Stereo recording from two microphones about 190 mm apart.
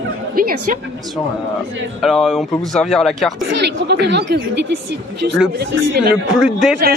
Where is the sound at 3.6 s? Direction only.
60° right (ahead or behind).